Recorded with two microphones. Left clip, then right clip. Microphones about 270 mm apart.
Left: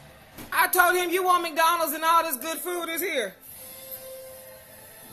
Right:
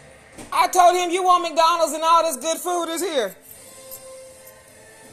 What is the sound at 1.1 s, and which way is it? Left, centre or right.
Speech, left.